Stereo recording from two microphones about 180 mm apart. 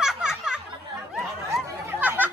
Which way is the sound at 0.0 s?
5° right (ahead or behind).